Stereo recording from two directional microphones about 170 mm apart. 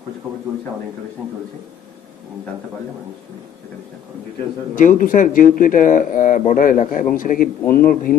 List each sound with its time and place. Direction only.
4.7 s speech: 50° left (ahead or behind)